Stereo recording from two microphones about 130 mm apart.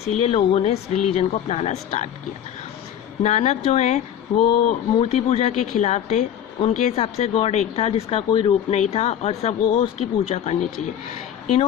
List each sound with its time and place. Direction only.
0.1 s speech: 50° left (ahead or behind)
3.2 s speech: 60° left (ahead or behind)
8.3 s speech: 35° left (ahead or behind)
8.7 s speech: 60° left (ahead or behind)